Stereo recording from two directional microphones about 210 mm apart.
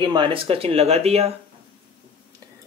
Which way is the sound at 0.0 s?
20° right (ahead or behind).